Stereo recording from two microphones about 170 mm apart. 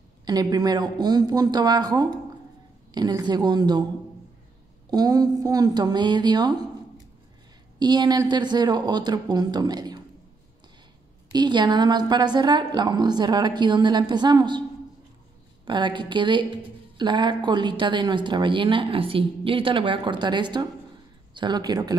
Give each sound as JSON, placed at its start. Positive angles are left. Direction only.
{"t": 0.2, "sound": "speech", "side_deg": -25}
{"t": 4.9, "sound": "speech", "side_deg": -20}
{"t": 7.8, "sound": "speech", "side_deg": -25}
{"t": 11.3, "sound": "speech", "side_deg": -25}
{"t": 15.6, "sound": "speech", "side_deg": -30}